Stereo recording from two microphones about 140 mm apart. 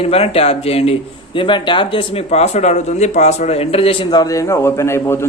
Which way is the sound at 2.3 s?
55° left (ahead or behind).